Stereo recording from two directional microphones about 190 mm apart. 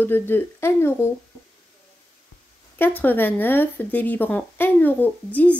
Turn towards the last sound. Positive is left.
turn(degrees=10)  # may be behind; listen again after turning